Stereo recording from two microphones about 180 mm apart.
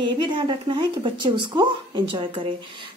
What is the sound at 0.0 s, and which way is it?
Speech, 25° right (ahead or behind).